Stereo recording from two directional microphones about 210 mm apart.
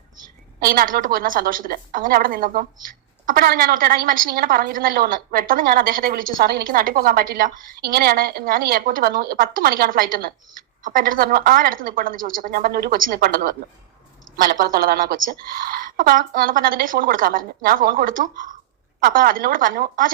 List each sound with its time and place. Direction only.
0.6 s a woman's voice: 45° right (ahead or behind)